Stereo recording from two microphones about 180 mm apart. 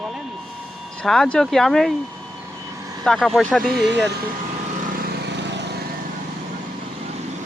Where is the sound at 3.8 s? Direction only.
75° right (ahead or behind).